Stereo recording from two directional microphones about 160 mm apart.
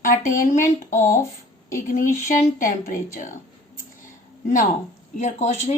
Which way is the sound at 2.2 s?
55° left (ahead or behind).